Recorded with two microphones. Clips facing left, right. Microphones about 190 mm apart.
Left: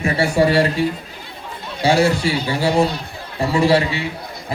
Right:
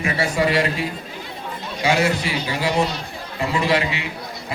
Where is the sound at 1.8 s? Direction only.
30° left (ahead or behind).